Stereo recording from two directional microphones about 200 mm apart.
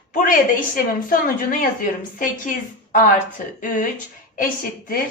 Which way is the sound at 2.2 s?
40° left (ahead or behind).